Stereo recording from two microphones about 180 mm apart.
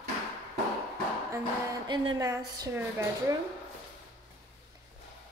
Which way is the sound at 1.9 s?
20° right (ahead or behind).